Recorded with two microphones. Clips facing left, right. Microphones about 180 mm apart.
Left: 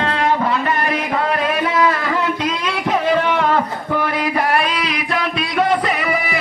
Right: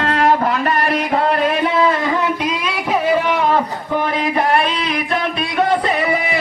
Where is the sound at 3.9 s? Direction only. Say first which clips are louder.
Right 1 dB; 25° right (ahead or behind).